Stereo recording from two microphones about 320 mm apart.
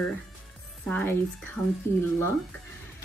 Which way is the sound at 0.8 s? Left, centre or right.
Centre.